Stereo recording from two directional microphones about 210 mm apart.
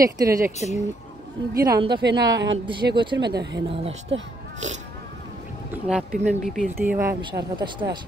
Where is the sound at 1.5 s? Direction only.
15° right (ahead or behind).